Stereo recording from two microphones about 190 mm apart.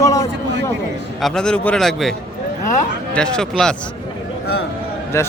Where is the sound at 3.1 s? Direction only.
5° left (ahead or behind).